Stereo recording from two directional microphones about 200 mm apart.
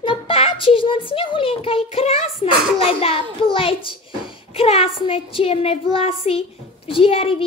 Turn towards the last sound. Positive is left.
turn(degrees=30)  # may be behind; listen again after turning